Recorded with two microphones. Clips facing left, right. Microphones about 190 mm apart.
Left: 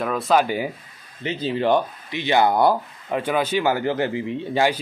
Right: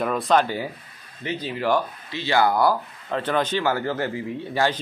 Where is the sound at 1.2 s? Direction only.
25° left (ahead or behind).